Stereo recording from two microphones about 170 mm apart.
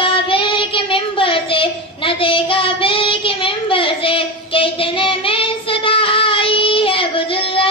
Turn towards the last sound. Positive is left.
turn(degrees=30)  # may be behind; listen again after turning